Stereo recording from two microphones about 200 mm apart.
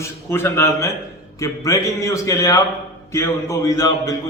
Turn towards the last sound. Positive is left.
turn(degrees=15)  # may be behind; listen again after turning